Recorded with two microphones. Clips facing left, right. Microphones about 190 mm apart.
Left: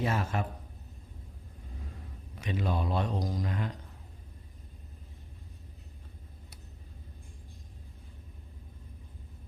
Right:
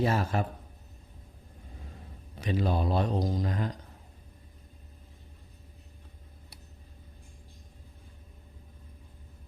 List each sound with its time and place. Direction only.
0.0 s a man's voice: 35° right (ahead or behind)
2.3 s a man's voice: 35° right (ahead or behind)